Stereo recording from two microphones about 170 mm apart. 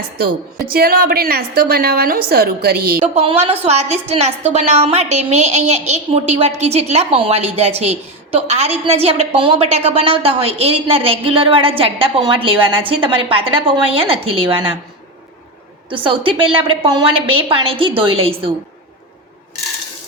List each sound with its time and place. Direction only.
0.2 s a woman's voice: 60° right (ahead or behind)
3.0 s a woman's voice: 35° right (ahead or behind)
16.0 s a woman's voice: 30° right (ahead or behind)